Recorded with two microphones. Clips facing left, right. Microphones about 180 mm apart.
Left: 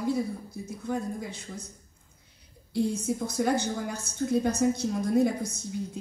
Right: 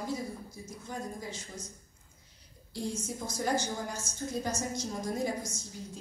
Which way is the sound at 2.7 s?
60° left (ahead or behind).